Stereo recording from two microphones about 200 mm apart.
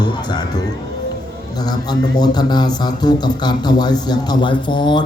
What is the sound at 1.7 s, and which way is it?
Speech, 20° left (ahead or behind).